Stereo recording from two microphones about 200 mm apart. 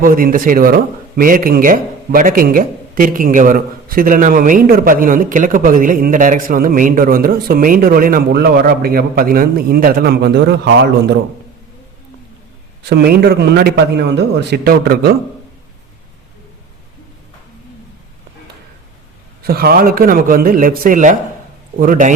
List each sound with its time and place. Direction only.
0.0 s speech: 45° right (ahead or behind); by 11.2 s 60° right (ahead or behind)
12.8 s speech: 50° right (ahead or behind)
19.4 s a man's voice: 50° right (ahead or behind)